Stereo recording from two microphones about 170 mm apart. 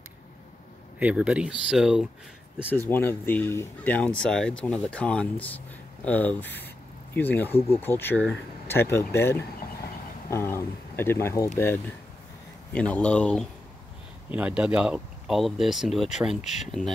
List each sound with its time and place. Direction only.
0.9 s speech: 5° right (ahead or behind)
2.7 s speech: 10° left (ahead or behind)
7.5 s speech: 35° left (ahead or behind)
7.8 s speech: 10° left (ahead or behind)
14.3 s speech: 5° right (ahead or behind)